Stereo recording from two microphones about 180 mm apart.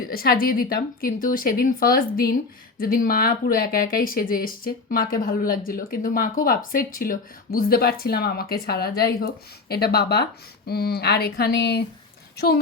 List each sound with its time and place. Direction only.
0.1 s a woman's voice: 55° left (ahead or behind)